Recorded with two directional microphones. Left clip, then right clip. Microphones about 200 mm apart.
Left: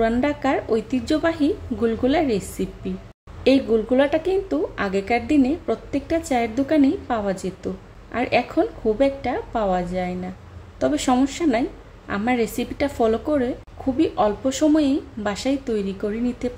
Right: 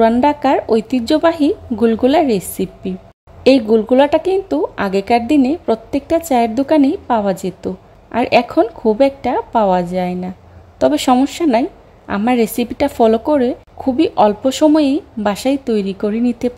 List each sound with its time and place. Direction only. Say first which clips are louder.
0.0 s a woman's voice: right 9 dB; 35° right (ahead or behind)